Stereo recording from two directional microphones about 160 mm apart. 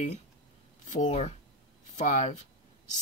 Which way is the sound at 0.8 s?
50° left (ahead or behind).